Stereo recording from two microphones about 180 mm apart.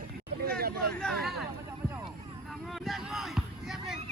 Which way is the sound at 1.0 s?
5° left (ahead or behind).